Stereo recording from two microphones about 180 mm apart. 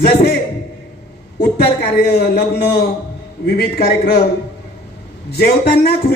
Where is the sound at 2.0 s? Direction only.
60° left (ahead or behind).